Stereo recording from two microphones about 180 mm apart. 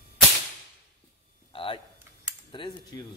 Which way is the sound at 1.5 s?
30° left (ahead or behind).